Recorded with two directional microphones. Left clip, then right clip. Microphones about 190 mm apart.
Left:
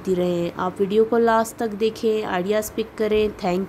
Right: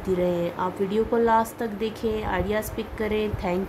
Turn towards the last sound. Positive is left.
turn(degrees=25)  # may be behind; listen again after turning